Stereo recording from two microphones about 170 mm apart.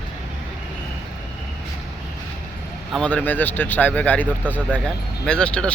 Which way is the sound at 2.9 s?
5° left (ahead or behind).